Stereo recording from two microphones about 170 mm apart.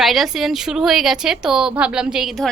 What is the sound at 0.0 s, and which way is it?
A woman's voice, centre (ahead or behind).